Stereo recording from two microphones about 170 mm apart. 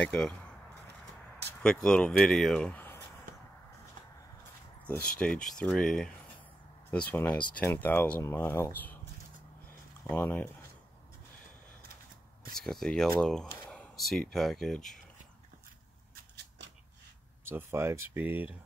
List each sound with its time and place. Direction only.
0.0 s speech: 5° left (ahead or behind)
1.6 s speech: 5° left (ahead or behind)
4.8 s speech: 5° left (ahead or behind)
10.0 s speech: 10° left (ahead or behind)
12.5 s speech: 5° left (ahead or behind)
16.3 s shuffling cards: 90° right
17.5 s speech: 15° right (ahead or behind)